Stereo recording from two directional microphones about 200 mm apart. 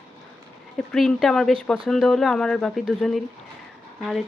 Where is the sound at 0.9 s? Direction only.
Centre (ahead or behind).